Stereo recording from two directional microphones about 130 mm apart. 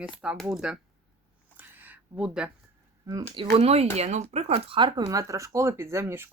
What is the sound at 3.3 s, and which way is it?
Speech, 45° right (ahead or behind).